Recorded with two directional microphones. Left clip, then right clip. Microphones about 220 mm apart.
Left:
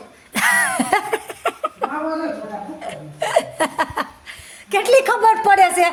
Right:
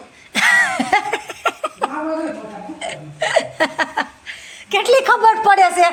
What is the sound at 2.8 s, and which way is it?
Hiccup, 10° left (ahead or behind).